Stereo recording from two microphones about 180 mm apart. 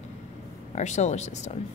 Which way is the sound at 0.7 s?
40° left (ahead or behind).